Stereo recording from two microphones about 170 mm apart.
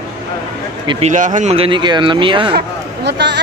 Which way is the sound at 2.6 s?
80° right.